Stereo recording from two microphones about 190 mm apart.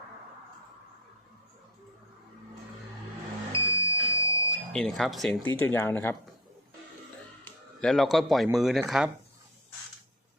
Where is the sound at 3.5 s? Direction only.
25° right (ahead or behind).